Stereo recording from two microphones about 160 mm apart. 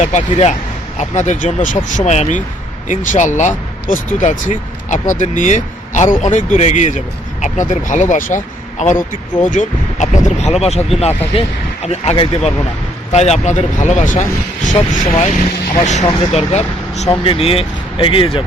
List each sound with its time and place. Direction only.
0.0 s speech: 45° left (ahead or behind)